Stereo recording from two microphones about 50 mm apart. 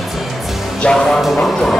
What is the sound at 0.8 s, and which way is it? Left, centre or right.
A man's voice, centre.